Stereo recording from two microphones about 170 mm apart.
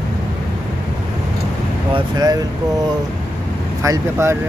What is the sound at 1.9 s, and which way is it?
Speech, 25° right (ahead or behind).